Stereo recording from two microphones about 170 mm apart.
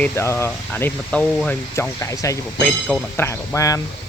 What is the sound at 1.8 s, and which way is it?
Speech, 20° left (ahead or behind).